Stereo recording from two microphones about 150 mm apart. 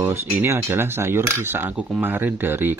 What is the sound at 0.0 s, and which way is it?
Speech, 20° right (ahead or behind).